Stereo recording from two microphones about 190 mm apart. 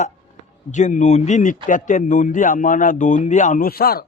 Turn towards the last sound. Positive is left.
turn(degrees=50)  # may be behind; listen again after turning